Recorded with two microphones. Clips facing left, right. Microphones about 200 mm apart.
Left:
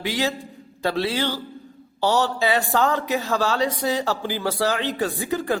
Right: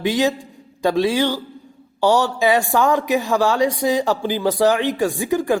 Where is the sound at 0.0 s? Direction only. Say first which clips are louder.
Right 6 dB; 20° right (ahead or behind).